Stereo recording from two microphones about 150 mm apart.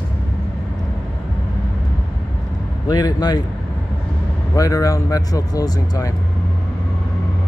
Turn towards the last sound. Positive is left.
turn(degrees=25)  # may be behind; listen again after turning